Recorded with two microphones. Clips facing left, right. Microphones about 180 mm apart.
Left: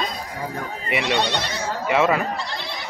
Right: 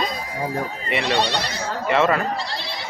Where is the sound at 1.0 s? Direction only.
35° right (ahead or behind).